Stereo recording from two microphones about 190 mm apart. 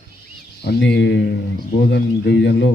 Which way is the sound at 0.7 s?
65° left (ahead or behind).